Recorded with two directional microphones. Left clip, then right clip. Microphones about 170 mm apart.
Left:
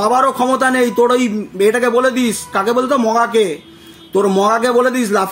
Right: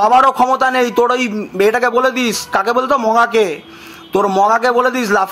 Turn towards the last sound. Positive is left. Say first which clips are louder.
# even
turn(degrees=20)  # may be behind; listen again after turning